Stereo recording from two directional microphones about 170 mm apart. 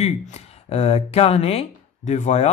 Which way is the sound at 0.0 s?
40° left (ahead or behind).